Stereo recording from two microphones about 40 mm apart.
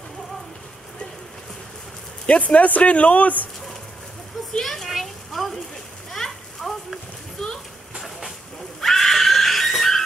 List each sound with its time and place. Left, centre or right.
2.2 s speech: left
4.6 s speech: centre
4.8 s a sound: centre
8.8 s neigh: centre